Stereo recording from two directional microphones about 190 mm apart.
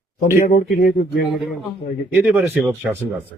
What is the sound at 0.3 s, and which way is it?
Speech, 40° left (ahead or behind).